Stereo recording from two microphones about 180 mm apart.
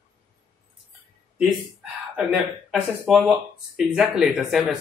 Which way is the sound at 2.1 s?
Centre (ahead or behind).